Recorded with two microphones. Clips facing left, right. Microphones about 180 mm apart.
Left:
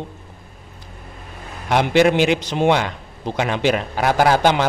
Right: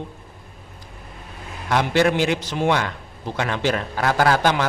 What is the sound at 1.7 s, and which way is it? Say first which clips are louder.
A man's voice: left 4 dB; 20° left (ahead or behind).